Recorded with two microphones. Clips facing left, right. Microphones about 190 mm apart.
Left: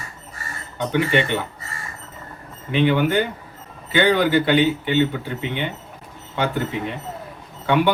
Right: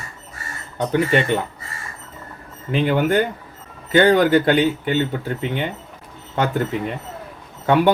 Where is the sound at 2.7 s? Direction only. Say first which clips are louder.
Even; 40° right (ahead or behind).